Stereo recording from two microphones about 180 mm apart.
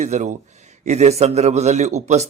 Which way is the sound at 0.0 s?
40° right (ahead or behind).